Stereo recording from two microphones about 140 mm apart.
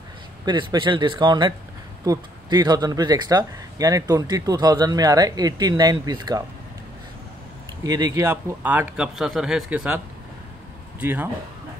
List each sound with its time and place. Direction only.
0.5 s speech: 35° right (ahead or behind)
7.8 s a man's voice: 25° right (ahead or behind)